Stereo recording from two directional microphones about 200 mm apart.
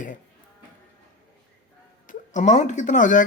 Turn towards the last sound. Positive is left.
turn(degrees=40)  # may be behind; listen again after turning